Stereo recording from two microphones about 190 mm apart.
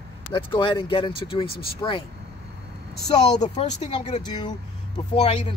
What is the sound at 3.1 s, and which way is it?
Speech, 35° left (ahead or behind).